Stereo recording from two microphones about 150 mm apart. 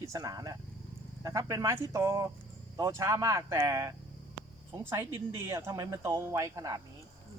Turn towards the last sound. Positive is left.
turn(degrees=-20)  # may be behind; listen again after turning